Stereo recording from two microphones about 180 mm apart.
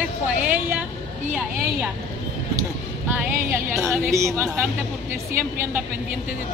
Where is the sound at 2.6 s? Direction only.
10° right (ahead or behind).